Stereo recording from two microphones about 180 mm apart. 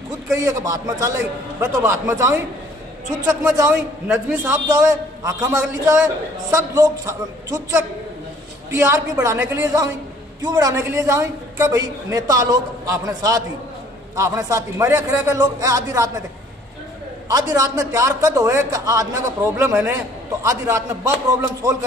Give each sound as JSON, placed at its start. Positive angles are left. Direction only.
{"t": 0.3, "sound": "a man's voice", "side_deg": -20}
{"t": 17.3, "sound": "a man's voice", "side_deg": -20}